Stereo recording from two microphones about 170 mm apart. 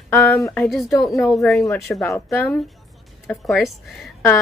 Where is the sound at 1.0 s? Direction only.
Centre (ahead or behind).